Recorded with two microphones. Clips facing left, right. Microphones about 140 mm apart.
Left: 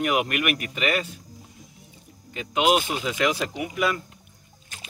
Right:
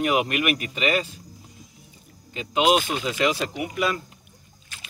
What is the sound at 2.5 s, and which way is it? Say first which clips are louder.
Speech: right 1 dB; 10° left (ahead or behind).